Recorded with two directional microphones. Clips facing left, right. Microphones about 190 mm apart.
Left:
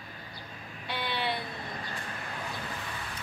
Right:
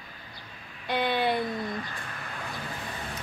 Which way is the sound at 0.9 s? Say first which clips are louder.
Right 7 dB; 45° right (ahead or behind).